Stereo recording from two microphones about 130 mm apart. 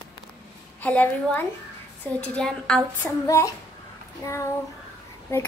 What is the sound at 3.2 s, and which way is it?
Speech, 25° left (ahead or behind).